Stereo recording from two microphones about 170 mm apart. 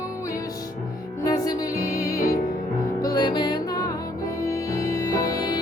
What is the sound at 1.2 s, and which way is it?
Music, 20° left (ahead or behind).